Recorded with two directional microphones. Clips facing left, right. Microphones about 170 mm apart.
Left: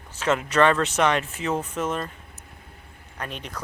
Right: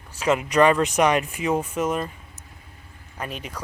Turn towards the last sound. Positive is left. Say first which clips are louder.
# right 2 dB
turn(degrees=-10)  # may be behind; listen again after turning